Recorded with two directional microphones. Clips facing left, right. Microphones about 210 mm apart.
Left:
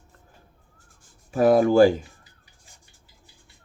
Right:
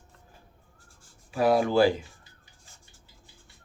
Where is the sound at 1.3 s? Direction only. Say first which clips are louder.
Left 5 dB; 45° left (ahead or behind).